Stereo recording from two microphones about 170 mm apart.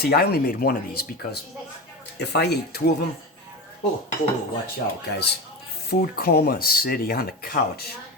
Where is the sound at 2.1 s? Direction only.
75° left (ahead or behind).